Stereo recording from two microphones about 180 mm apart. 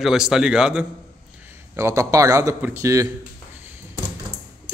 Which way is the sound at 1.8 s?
15° right (ahead or behind).